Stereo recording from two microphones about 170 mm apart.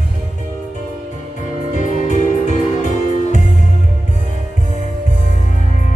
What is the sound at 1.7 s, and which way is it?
Music, 45° left (ahead or behind).